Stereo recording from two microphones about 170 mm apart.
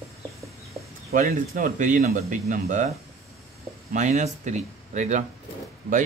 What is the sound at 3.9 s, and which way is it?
Speech, 45° right (ahead or behind).